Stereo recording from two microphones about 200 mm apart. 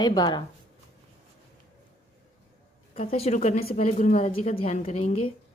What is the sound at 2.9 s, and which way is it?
A woman's voice, 30° left (ahead or behind).